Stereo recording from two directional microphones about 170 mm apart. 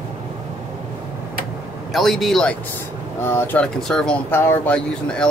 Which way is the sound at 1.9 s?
Centre (ahead or behind).